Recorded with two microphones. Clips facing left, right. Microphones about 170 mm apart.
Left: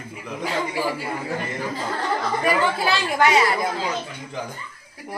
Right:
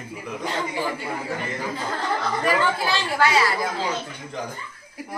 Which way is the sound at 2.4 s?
15° left (ahead or behind).